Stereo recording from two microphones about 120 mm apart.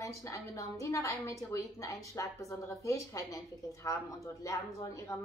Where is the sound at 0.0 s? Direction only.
25° left (ahead or behind).